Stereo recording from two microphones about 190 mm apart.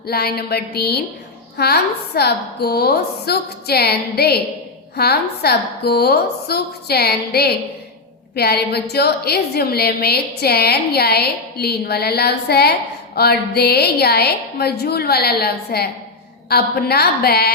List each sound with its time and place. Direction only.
0.1 s a woman's voice: 55° left (ahead or behind)